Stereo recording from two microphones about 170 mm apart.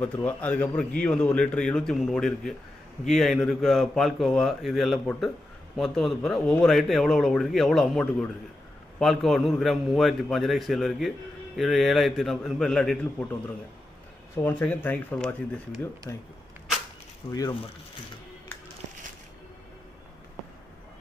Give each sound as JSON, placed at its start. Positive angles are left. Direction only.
{"t": 0.0, "sound": "a man's voice", "side_deg": 10}
{"t": 17.3, "sound": "speech", "side_deg": 20}